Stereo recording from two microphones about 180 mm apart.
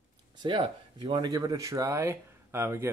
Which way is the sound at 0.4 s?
25° right (ahead or behind).